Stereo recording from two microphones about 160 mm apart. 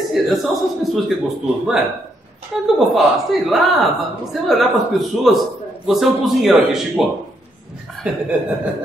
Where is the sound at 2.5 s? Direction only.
Centre (ahead or behind).